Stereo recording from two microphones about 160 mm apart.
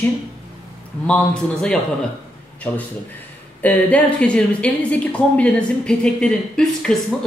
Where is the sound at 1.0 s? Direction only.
5° left (ahead or behind).